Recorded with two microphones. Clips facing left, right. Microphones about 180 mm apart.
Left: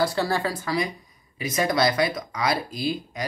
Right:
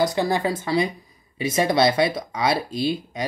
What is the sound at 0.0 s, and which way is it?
Speech, 20° right (ahead or behind).